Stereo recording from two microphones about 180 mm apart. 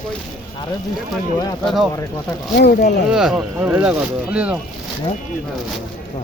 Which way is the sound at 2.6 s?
65° left (ahead or behind).